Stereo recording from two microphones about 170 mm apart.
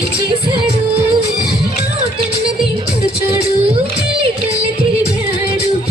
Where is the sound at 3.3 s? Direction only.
35° right (ahead or behind).